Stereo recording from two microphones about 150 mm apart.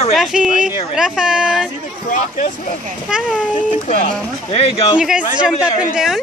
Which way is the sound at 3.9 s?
40° left (ahead or behind).